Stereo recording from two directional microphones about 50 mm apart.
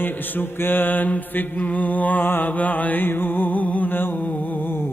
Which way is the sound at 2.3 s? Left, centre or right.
Left.